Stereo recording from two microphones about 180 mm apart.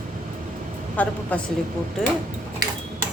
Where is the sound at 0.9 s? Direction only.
10° left (ahead or behind).